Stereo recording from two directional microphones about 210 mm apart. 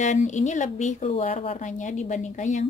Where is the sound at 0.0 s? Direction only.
35° left (ahead or behind).